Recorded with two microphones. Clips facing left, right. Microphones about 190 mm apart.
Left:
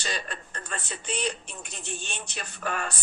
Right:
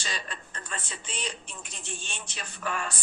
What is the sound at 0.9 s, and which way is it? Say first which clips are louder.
Speech: left 11 dB; 65° left (ahead or behind).